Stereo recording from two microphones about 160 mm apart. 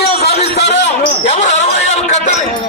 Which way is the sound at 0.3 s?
90° left.